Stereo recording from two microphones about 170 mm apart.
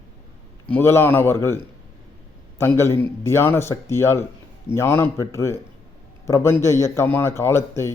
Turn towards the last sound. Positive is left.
turn(degrees=15)  # may be behind; listen again after turning